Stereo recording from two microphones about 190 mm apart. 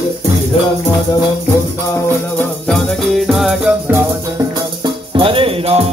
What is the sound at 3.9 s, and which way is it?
Music, 20° right (ahead or behind).